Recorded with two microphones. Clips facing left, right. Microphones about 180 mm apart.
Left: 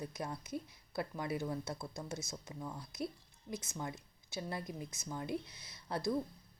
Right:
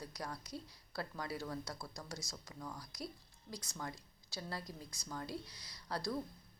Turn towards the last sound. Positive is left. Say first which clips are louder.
# left 4 dB
turn(degrees=20)  # may be behind; listen again after turning